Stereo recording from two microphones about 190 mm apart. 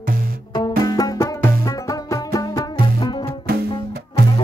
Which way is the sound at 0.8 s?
20° left (ahead or behind).